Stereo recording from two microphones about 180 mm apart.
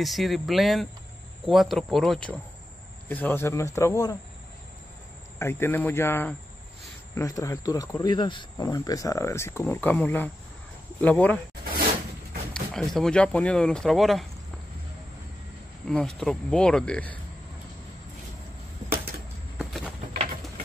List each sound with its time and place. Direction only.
0.0 s speech: centre (ahead or behind); by 4.2 s 20° left (ahead or behind)
5.4 s speech: 15° left (ahead or behind)
11.6 s a sound: 55° right (ahead or behind)
12.5 s speech: 5° left (ahead or behind)
15.9 s speech: centre (ahead or behind)
19.6 s a sound: centre (ahead or behind)